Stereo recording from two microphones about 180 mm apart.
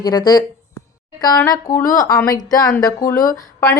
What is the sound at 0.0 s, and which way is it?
Speech, 20° left (ahead or behind).